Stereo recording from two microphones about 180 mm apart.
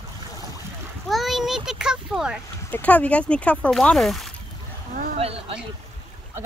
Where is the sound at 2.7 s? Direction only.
10° left (ahead or behind).